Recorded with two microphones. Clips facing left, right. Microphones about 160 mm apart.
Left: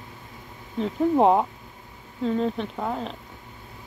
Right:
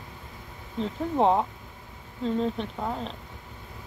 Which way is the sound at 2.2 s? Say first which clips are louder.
Left 2 dB; 5° left (ahead or behind).